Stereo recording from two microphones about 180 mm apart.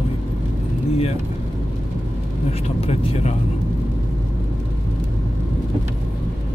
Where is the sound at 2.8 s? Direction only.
30° left (ahead or behind).